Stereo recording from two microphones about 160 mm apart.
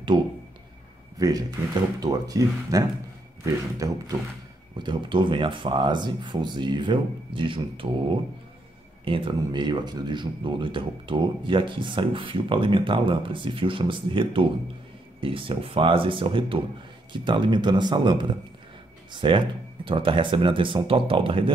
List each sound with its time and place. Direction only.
1.1 s speech: 25° right (ahead or behind)
3.8 s speech: 20° right (ahead or behind)